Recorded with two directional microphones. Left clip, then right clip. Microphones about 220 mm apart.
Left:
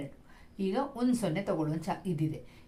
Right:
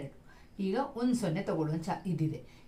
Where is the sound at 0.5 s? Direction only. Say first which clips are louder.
Left 1 dB; 35° left (ahead or behind).